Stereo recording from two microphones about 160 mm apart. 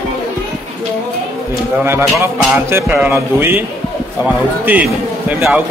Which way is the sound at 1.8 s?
15° right (ahead or behind).